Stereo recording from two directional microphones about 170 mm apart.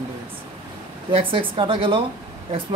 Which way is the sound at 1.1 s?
30° right (ahead or behind).